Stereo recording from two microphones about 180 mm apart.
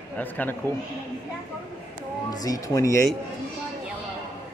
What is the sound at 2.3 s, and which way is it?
Speech, 20° left (ahead or behind).